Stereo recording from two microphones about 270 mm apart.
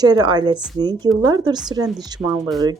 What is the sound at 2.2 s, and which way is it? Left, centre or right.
Speech, centre.